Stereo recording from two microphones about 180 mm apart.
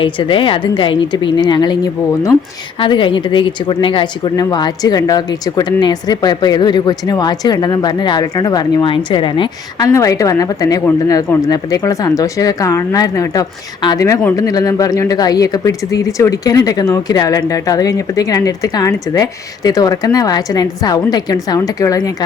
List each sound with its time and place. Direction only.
0.0 s a woman's voice: 30° left (ahead or behind)